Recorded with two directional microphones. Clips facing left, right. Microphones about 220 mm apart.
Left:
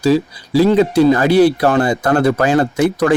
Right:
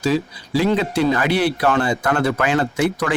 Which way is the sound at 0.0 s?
40° left (ahead or behind).